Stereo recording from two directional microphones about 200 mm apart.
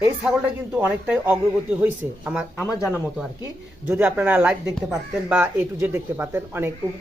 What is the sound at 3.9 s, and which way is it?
Speech, 5° right (ahead or behind).